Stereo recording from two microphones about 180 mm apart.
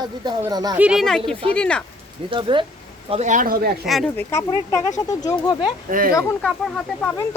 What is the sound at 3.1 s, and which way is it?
Speech, 40° right (ahead or behind).